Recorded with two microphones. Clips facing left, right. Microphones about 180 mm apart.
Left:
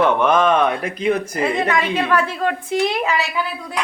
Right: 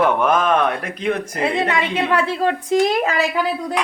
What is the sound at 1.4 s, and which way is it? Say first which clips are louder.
A woman's voice: even; 30° right (ahead or behind).